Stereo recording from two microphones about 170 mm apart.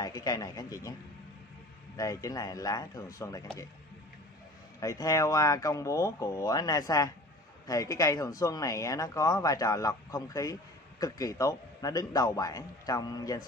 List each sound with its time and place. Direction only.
0.0 s speech: 20° left (ahead or behind)
2.0 s speech: 20° left (ahead or behind)
4.7 s speech: 20° left (ahead or behind)